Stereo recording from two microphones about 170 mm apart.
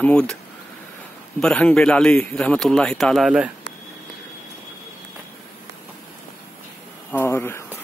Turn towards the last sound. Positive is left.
turn(degrees=15)  # may be behind; listen again after turning